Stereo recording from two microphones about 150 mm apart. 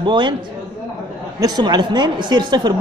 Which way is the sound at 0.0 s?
30° right (ahead or behind).